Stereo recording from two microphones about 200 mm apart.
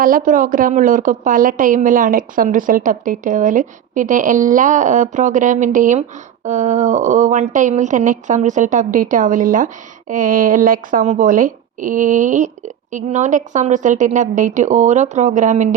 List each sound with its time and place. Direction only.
0.0 s a woman's voice: 45° right (ahead or behind)